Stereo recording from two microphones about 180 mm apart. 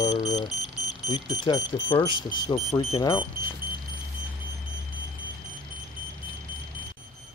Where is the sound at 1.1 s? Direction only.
35° left (ahead or behind).